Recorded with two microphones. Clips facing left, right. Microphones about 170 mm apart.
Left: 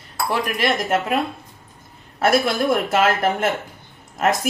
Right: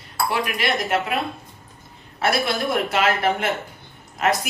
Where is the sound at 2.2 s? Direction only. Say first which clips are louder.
Left 4 dB; 45° left (ahead or behind).